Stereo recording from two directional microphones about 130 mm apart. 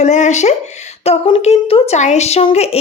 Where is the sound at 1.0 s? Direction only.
50° left (ahead or behind).